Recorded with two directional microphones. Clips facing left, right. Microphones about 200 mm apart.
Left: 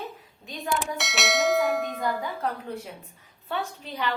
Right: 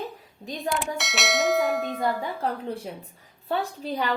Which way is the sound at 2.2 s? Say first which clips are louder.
Right 2 dB; 30° right (ahead or behind).